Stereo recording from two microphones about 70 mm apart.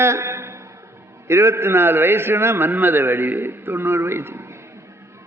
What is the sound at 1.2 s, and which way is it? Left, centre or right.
A man's voice, right.